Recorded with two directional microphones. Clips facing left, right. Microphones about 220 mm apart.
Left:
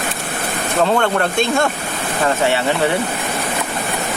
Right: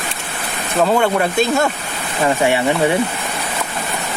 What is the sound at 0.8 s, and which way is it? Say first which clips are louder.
Speech: right 1 dB; 5° right (ahead or behind).